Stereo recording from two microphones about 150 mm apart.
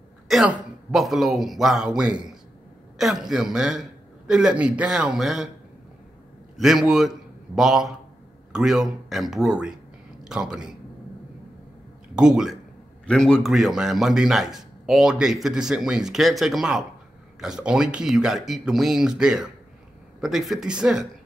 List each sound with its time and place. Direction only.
0.3 s speech: centre (ahead or behind)
6.5 s a man's voice: 5° right (ahead or behind)
12.2 s speech: 5° right (ahead or behind)